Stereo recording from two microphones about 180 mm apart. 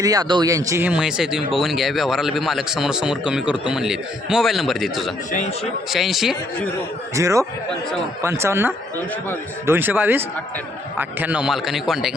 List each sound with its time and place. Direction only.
0.0 s speech: 20° right (ahead or behind); by 6.7 s centre (ahead or behind)
7.2 s speech: 15° right (ahead or behind)